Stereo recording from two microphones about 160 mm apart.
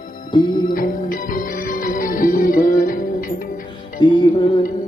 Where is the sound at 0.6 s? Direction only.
60° left (ahead or behind).